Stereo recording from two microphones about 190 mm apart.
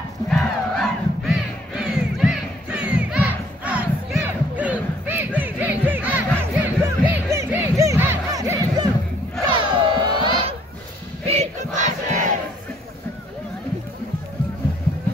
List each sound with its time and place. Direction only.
0.3 s battle cry: centre (ahead or behind)
6.6 s music: 10° right (ahead or behind)
9.5 s crowd: 25° right (ahead or behind)
11.2 s crowd: 35° right (ahead or behind)